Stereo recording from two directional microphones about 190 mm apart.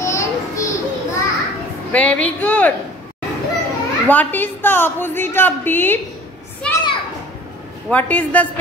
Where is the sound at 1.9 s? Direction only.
5° left (ahead or behind).